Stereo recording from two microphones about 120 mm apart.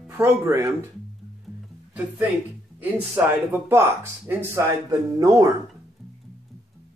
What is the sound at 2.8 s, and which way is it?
Speech, 15° right (ahead or behind).